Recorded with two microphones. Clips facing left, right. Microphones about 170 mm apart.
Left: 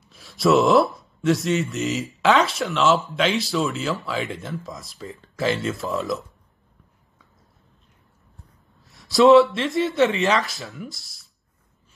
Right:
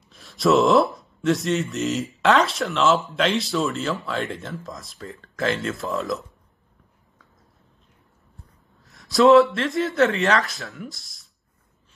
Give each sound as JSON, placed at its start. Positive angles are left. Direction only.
{"t": 0.1, "sound": "speech", "side_deg": 0}
{"t": 8.9, "sound": "a sound", "side_deg": 0}
{"t": 9.3, "sound": "speech", "side_deg": 0}